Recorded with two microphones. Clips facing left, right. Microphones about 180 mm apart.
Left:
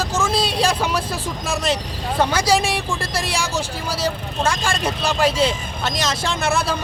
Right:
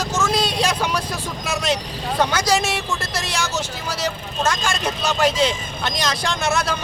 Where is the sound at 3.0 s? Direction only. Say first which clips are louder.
Left 2 dB; 30° left (ahead or behind).